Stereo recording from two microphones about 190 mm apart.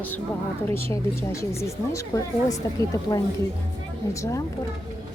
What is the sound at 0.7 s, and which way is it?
Speech, 15° left (ahead or behind).